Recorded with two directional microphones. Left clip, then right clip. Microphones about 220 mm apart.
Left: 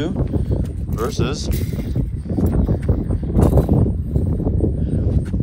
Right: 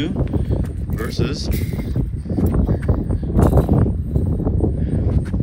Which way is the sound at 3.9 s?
Centre (ahead or behind).